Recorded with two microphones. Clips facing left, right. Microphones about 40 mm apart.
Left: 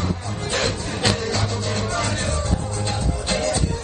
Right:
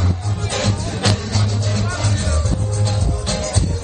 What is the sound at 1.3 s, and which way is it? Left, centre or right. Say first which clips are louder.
Music: right 1 dB; left.